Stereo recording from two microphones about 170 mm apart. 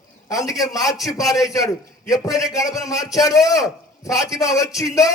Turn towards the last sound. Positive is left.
turn(degrees=20)  # may be behind; listen again after turning